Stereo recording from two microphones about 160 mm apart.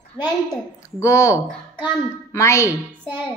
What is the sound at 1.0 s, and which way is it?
A woman's voice, 15° left (ahead or behind).